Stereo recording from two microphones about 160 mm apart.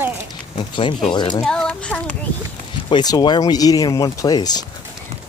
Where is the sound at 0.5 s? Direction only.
30° left (ahead or behind).